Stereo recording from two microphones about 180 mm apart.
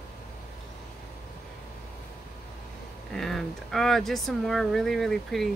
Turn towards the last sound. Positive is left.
turn(degrees=0)  # may be behind; listen again after turning